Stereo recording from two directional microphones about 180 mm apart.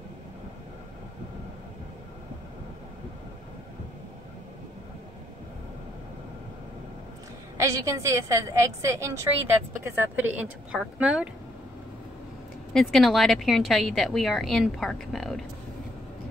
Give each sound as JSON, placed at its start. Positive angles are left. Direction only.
{"t": 7.5, "sound": "a woman's voice", "side_deg": -15}
{"t": 12.7, "sound": "a woman's voice", "side_deg": 0}